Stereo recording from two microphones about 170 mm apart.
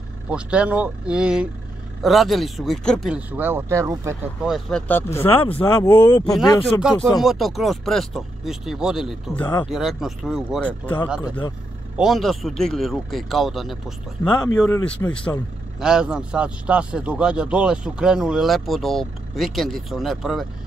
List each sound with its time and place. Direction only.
0.3 s a man's voice: 5° right (ahead or behind)
4.4 s a man's voice: centre (ahead or behind); by 6.2 s 20° left (ahead or behind)
6.8 s a man's voice: centre (ahead or behind)
11.2 s speech: 25° left (ahead or behind)
12.0 s a man's voice: centre (ahead or behind)
15.8 s a man's voice: 5° right (ahead or behind)